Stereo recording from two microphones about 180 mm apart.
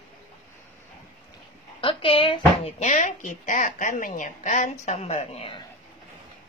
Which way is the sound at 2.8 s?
40° left (ahead or behind).